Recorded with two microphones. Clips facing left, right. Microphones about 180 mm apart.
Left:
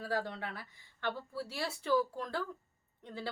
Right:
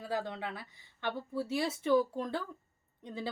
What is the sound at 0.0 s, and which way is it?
Speech, 20° right (ahead or behind).